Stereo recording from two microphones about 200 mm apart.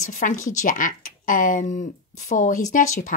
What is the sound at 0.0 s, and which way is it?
Speech, 40° left (ahead or behind).